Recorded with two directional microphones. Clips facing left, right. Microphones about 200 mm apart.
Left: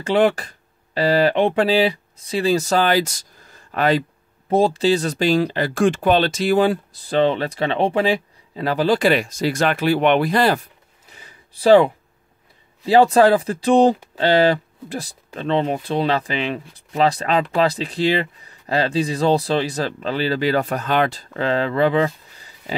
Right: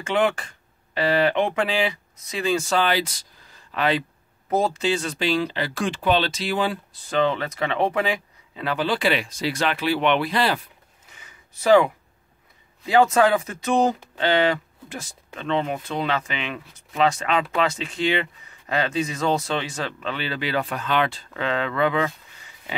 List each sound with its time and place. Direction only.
0.0 s speech: 35° left (ahead or behind)
4.5 s speech: 30° left (ahead or behind)